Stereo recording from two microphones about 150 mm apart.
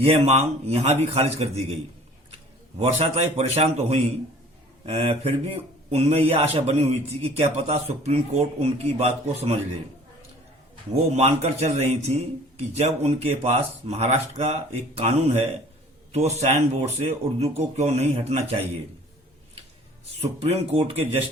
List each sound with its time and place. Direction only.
0.0 s a man's voice: 45° right (ahead or behind)
10.9 s a man's voice: 45° right (ahead or behind)
20.4 s a man's voice: 45° right (ahead or behind)